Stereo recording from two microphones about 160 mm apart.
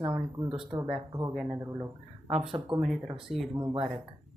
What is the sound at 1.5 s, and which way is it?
Speech, 20° right (ahead or behind).